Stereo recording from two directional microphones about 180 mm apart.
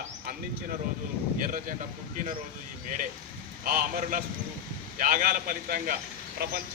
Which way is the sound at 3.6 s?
50° right (ahead or behind).